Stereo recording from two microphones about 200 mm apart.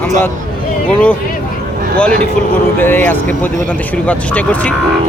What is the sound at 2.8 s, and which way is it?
Speech, 10° left (ahead or behind).